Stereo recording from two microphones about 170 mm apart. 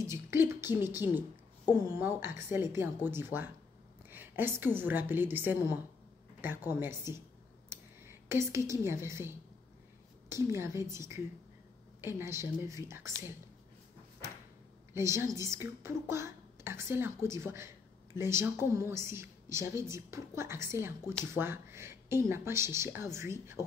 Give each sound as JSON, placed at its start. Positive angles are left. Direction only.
{"t": 0.0, "sound": "a sound", "side_deg": -15}
{"t": 0.9, "sound": "a woman's voice", "side_deg": -15}
{"t": 10.3, "sound": "a woman's voice", "side_deg": -15}
{"t": 15.0, "sound": "a woman's voice", "side_deg": -15}